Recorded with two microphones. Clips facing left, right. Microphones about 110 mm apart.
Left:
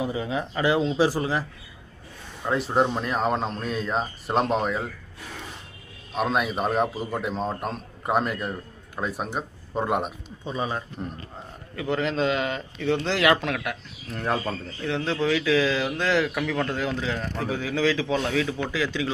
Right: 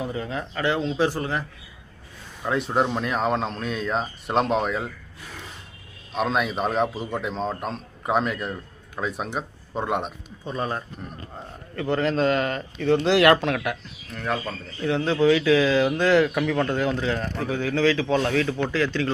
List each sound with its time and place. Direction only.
0.0 s a man's voice: 10° left (ahead or behind)
6.1 s speech: 5° left (ahead or behind)
14.1 s speech: 30° left (ahead or behind)
14.8 s speech: centre (ahead or behind)